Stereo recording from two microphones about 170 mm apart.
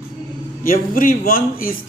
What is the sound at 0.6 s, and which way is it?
A man's voice, 55° left (ahead or behind).